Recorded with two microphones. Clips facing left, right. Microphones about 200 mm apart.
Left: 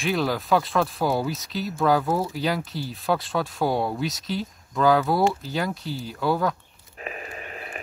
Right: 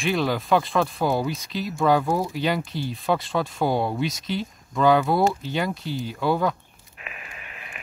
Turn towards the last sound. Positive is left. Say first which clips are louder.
# left 7 dB
turn(degrees=40)  # may be behind; listen again after turning